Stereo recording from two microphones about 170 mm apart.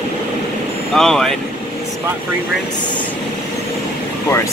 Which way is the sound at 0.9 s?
5° left (ahead or behind).